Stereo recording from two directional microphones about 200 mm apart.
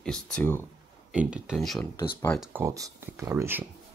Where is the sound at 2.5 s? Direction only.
15° right (ahead or behind).